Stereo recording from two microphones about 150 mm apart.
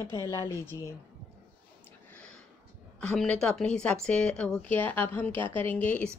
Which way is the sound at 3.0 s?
5° left (ahead or behind).